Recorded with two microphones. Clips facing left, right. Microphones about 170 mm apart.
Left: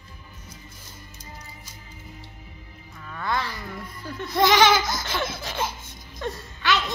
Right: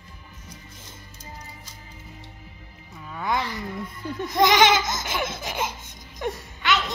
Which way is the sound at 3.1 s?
15° right (ahead or behind).